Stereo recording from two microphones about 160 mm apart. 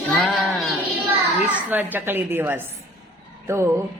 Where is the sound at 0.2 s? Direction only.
5° left (ahead or behind).